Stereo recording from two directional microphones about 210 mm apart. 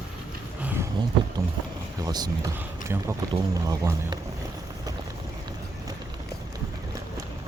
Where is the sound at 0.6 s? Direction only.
10° right (ahead or behind).